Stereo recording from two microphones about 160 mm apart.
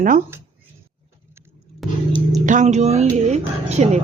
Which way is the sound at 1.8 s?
Centre (ahead or behind).